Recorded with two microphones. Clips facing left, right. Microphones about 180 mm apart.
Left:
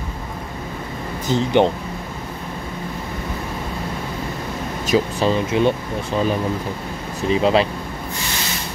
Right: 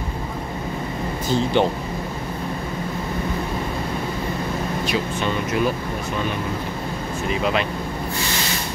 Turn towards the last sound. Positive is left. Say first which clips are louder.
# left 6 dB
turn(degrees=30)  # may be behind; listen again after turning